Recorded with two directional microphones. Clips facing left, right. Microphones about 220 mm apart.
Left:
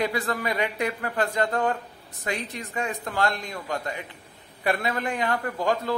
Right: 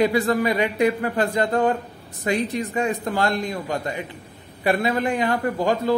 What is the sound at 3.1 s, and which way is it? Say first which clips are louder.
A man's voice: right 5 dB; 35° right (ahead or behind).